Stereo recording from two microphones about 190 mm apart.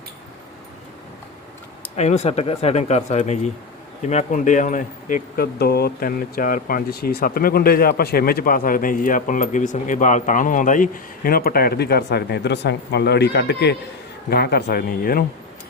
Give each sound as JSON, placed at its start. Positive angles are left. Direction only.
{"t": 2.0, "sound": "speech", "side_deg": 35}